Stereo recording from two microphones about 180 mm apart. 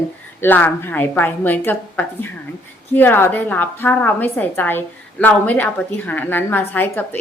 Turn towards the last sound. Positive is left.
turn(degrees=10)  # may be behind; listen again after turning